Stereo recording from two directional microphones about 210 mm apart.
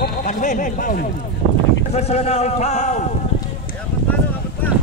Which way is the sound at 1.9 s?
30° left (ahead or behind).